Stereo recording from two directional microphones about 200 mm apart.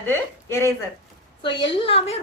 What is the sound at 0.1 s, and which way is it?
Speech, 15° left (ahead or behind).